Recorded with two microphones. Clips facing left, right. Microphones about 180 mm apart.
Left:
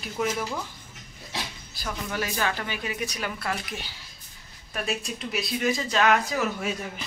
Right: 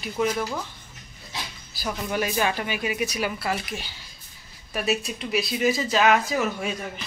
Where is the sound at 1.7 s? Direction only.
15° right (ahead or behind).